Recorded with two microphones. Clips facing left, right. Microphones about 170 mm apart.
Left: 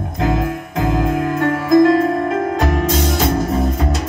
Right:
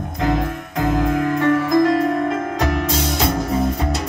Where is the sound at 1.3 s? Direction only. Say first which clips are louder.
Left 4 dB; 45° left (ahead or behind).